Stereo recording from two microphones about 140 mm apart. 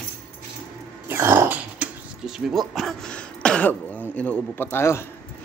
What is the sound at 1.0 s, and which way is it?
Dog, 15° right (ahead or behind).